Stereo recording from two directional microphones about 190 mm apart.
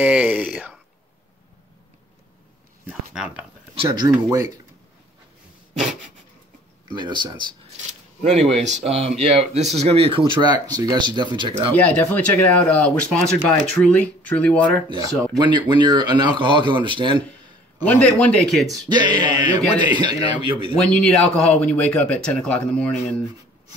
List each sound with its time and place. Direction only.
0.0 s speech: 5° right (ahead or behind)
2.9 s a sound: 5° right (ahead or behind)
3.7 s speech: 25° right (ahead or behind)
6.9 s speech: 25° right (ahead or behind)
8.2 s speech: 35° right (ahead or behind)
11.7 s speech: 10° left (ahead or behind)
14.9 s speech: 20° right (ahead or behind)
17.8 s speech: 5° left (ahead or behind)
18.9 s speech: 20° right (ahead or behind)
20.7 s speech: 5° left (ahead or behind)